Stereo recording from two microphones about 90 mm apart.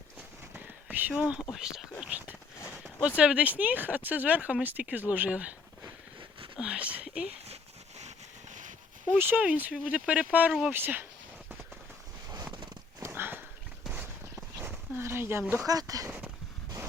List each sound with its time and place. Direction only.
0.5 s a sound: 20° right (ahead or behind)
3.2 s speech: 10° right (ahead or behind)
6.6 s speech: 10° right (ahead or behind)
9.1 s speech: 25° right (ahead or behind)
13.0 s horse: 25° right (ahead or behind)
13.9 s a sound: 20° right (ahead or behind)
15.6 s speech: 45° right (ahead or behind)